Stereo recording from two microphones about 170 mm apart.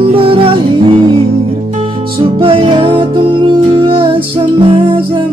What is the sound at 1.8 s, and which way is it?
Music, 30° right (ahead or behind).